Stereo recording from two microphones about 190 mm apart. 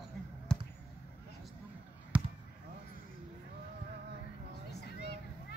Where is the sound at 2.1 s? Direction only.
5° right (ahead or behind).